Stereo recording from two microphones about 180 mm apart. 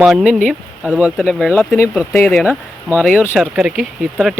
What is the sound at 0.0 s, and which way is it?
Speech, 5° right (ahead or behind).